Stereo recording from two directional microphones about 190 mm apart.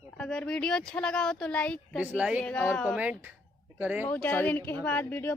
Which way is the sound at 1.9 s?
5° right (ahead or behind).